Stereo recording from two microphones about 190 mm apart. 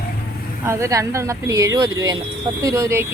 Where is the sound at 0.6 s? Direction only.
15° right (ahead or behind).